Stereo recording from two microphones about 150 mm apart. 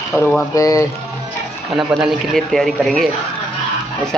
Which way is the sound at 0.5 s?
20° left (ahead or behind).